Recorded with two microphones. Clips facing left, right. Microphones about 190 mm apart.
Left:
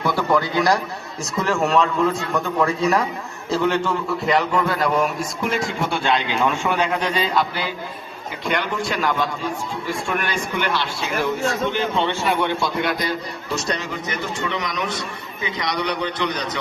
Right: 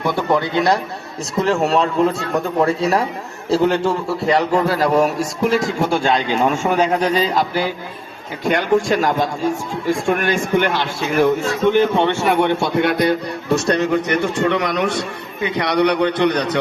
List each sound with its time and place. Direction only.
0.0 s a man's voice: 20° right (ahead or behind); by 16.6 s 60° right (ahead or behind)